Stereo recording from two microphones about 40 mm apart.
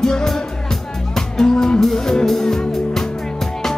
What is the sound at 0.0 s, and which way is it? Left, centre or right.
Music, centre.